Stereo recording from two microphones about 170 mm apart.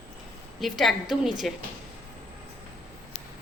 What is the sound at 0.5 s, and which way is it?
Speech, centre (ahead or behind).